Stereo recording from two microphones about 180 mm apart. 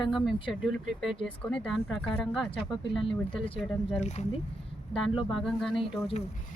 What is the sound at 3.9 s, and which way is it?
Speech, 40° left (ahead or behind).